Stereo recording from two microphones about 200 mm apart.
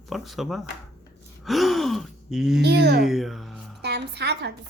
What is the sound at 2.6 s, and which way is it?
Speech, 55° right (ahead or behind).